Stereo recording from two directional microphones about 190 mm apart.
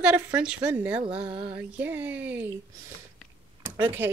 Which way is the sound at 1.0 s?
30° right (ahead or behind).